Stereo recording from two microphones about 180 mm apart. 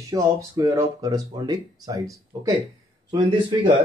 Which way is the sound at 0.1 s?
15° right (ahead or behind).